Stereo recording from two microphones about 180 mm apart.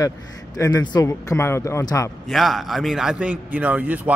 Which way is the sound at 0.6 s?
20° left (ahead or behind).